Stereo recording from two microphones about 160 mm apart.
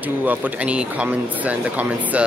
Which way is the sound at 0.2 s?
10° right (ahead or behind).